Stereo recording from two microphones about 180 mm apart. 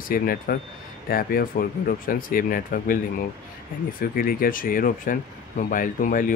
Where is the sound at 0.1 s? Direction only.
55° left (ahead or behind).